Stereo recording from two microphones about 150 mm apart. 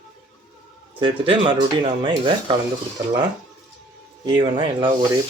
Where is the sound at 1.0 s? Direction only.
35° right (ahead or behind).